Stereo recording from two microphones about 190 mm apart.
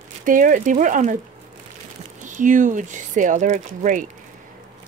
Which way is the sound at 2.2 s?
45° right (ahead or behind).